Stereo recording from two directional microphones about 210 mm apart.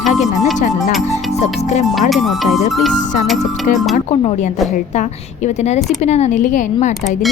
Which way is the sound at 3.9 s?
30° left (ahead or behind).